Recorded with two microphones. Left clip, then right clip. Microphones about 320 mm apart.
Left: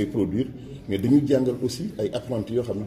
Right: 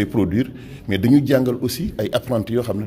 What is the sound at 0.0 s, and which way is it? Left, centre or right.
A man's voice, right.